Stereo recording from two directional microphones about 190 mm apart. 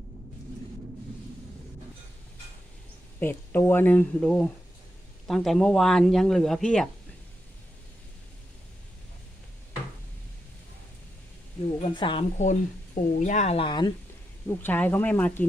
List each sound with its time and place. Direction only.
3.2 s speech: 10° left (ahead or behind)
11.8 s speech: 25° left (ahead or behind)
12.4 s speech: 40° left (ahead or behind); by 13.9 s 25° left (ahead or behind)
14.5 s speech: 10° left (ahead or behind)